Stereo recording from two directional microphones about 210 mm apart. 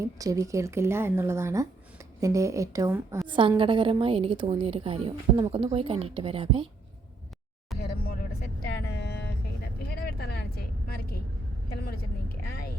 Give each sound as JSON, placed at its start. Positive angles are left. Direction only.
{"t": 0.0, "sound": "a woman's voice", "side_deg": -15}
{"t": 7.7, "sound": "vehicle", "side_deg": 0}
{"t": 8.8, "sound": "a sound", "side_deg": 50}
{"t": 9.9, "sound": "vehicle", "side_deg": 50}